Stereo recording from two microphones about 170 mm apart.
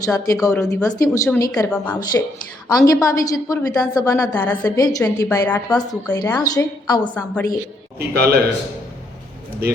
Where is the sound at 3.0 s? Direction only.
20° left (ahead or behind).